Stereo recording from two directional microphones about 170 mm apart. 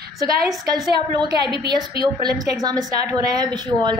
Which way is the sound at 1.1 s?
25° right (ahead or behind).